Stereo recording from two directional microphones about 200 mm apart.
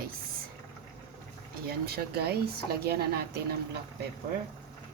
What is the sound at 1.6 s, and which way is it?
A woman's voice, 50° right (ahead or behind).